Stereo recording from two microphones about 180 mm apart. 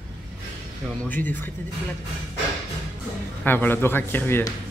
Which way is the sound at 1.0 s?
10° left (ahead or behind).